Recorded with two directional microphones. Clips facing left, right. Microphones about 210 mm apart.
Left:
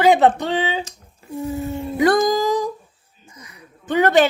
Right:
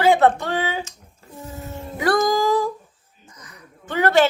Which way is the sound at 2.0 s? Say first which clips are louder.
Left 3 dB; 20° left (ahead or behind).